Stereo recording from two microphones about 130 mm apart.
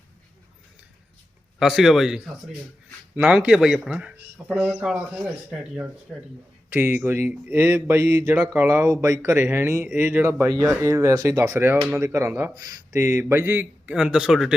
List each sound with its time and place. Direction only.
1.5 s speech: 5° right (ahead or behind)
3.2 s mantra: 10° right (ahead or behind)
6.1 s speech: 5° left (ahead or behind)
6.7 s mantra: 15° right (ahead or behind)
9.5 s speech: 20° right (ahead or behind)
10.0 s speech: 10° right (ahead or behind)
12.5 s mantra: 30° right (ahead or behind); by 14.5 s 5° right (ahead or behind)